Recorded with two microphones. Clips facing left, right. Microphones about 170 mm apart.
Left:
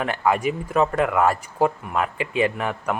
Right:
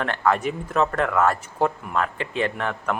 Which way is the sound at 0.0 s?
10° left (ahead or behind).